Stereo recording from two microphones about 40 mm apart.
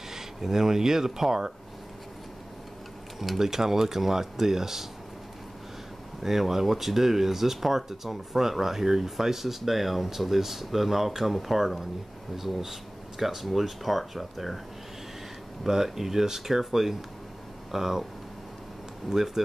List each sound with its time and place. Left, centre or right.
0.1 s speech: centre
3.2 s speech: centre
6.2 s speech: centre
15.6 s speech: centre
19.0 s speech: centre